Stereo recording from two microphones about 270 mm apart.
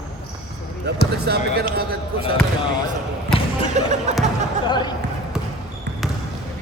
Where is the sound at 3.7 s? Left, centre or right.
Right.